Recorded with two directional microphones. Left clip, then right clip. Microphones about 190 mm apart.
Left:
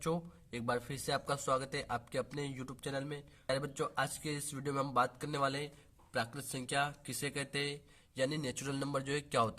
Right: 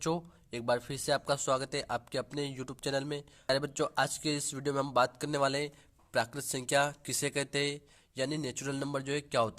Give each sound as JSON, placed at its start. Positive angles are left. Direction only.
{"t": 0.0, "sound": "speech", "side_deg": -25}